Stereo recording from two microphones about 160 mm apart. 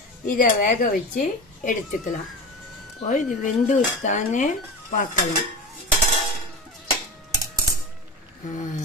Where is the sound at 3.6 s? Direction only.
50° left (ahead or behind).